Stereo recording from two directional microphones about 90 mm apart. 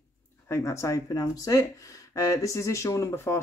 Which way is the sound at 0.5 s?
35° left (ahead or behind).